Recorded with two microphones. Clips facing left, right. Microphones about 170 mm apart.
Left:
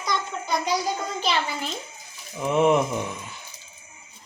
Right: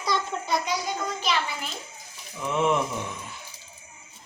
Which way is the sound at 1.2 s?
30° left (ahead or behind).